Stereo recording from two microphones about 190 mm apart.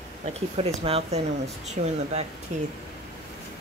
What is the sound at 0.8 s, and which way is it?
Speech, 30° right (ahead or behind).